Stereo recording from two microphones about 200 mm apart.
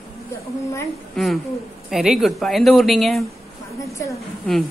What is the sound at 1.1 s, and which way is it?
A woman's voice, centre (ahead or behind).